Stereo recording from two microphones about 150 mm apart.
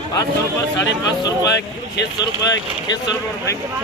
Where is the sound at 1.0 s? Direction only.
25° left (ahead or behind).